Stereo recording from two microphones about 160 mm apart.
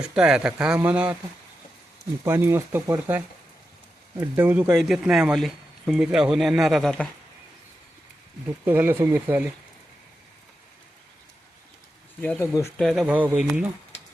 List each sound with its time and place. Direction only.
0.0 s speech: 5° right (ahead or behind)
2.2 s speech: 15° right (ahead or behind)
4.4 s speech: 15° right (ahead or behind)
4.8 s speech: centre (ahead or behind)
8.6 s speech: 10° right (ahead or behind)
12.2 s speech: 10° left (ahead or behind)
12.8 s speech: centre (ahead or behind)